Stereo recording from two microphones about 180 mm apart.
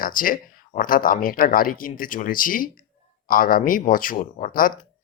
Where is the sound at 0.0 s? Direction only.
50° left (ahead or behind).